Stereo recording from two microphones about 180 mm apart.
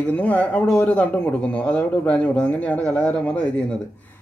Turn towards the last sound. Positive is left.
turn(degrees=5)  # may be behind; listen again after turning